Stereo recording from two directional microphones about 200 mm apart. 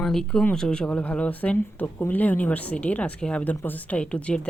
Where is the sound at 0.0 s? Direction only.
5° left (ahead or behind).